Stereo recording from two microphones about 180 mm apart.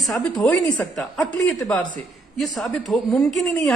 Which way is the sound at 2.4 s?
Centre (ahead or behind).